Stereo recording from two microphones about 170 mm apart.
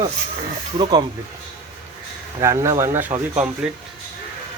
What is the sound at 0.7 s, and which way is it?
Speech, 30° right (ahead or behind).